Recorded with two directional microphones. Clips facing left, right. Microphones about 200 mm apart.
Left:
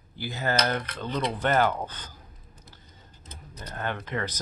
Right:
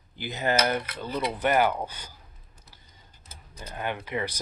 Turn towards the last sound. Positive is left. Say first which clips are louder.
# right 1 dB
turn(degrees=-10)  # may be behind; listen again after turning